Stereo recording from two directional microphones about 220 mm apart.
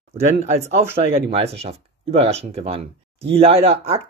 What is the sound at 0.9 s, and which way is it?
Speech, 25° right (ahead or behind).